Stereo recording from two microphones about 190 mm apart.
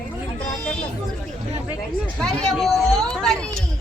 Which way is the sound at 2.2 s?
5° left (ahead or behind).